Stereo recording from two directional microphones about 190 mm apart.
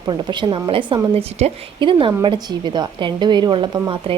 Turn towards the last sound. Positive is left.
turn(degrees=-25)  # may be behind; listen again after turning